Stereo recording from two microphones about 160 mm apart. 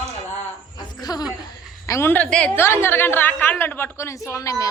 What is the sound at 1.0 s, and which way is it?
A woman's voice, 25° left (ahead or behind).